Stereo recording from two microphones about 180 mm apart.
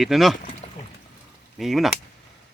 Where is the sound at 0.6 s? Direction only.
35° left (ahead or behind).